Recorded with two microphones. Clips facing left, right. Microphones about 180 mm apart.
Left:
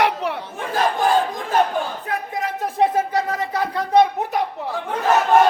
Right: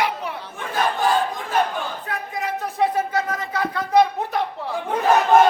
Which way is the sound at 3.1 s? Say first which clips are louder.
Left 2 dB; 35° left (ahead or behind).